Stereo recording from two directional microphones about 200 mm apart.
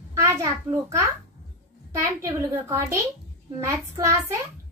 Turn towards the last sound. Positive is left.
turn(degrees=-15)  # may be behind; listen again after turning